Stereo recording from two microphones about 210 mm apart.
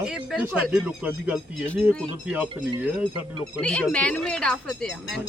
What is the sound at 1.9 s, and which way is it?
Speech, 5° left (ahead or behind).